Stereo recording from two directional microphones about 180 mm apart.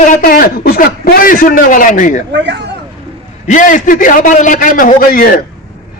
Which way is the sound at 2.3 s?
75° right (ahead or behind).